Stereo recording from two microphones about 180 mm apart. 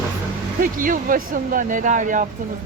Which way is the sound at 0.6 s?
50° right (ahead or behind).